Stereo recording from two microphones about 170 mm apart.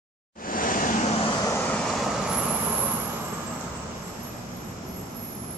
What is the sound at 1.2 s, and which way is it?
Vehicle, 25° left (ahead or behind).